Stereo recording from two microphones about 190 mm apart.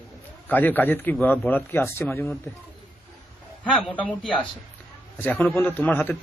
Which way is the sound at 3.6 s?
5° left (ahead or behind).